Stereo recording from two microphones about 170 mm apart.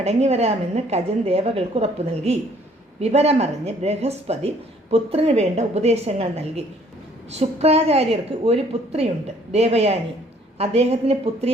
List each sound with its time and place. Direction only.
0.0 s speech: 40° right (ahead or behind)